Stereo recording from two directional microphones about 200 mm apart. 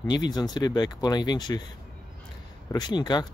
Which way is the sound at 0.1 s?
20° left (ahead or behind).